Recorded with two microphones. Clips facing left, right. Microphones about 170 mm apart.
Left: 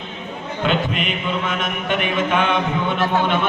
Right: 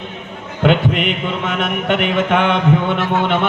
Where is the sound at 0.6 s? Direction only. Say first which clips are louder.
Right 6 dB; 65° right (ahead or behind).